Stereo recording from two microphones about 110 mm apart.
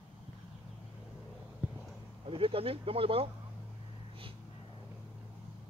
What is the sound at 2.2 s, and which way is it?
Speech, 55° right (ahead or behind).